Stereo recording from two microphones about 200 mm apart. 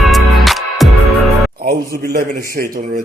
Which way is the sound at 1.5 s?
50° right (ahead or behind).